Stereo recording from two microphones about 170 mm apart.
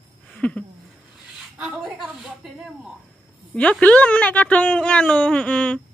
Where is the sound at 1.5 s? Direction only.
5° right (ahead or behind).